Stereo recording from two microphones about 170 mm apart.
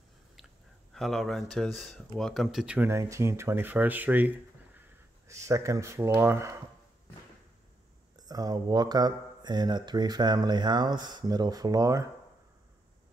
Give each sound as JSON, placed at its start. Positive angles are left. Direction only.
{"t": 0.9, "sound": "speech", "side_deg": 0}
{"t": 8.2, "sound": "speech", "side_deg": -20}